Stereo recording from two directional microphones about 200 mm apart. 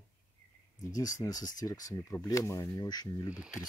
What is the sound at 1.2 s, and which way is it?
Speech, 20° left (ahead or behind).